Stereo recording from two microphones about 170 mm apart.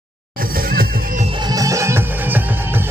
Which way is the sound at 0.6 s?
60° right (ahead or behind).